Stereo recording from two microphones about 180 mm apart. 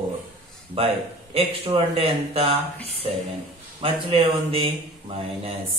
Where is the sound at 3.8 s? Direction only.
30° right (ahead or behind).